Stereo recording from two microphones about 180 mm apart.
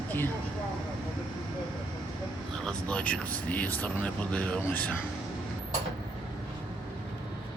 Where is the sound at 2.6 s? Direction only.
5° left (ahead or behind).